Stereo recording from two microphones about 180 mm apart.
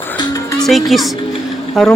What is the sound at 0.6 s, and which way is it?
Speech, centre (ahead or behind).